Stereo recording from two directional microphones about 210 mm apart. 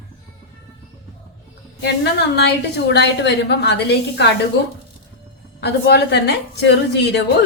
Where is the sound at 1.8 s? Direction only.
55° left (ahead or behind).